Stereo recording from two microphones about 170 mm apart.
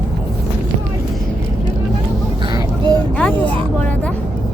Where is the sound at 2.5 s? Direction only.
20° right (ahead or behind).